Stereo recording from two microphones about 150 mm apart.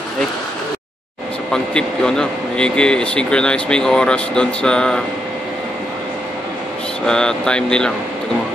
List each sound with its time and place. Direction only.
1.5 s speech: 5° left (ahead or behind)
7.1 s speech: 5° left (ahead or behind)